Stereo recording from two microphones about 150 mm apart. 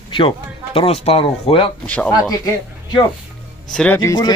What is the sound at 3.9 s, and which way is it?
Speech, 25° left (ahead or behind).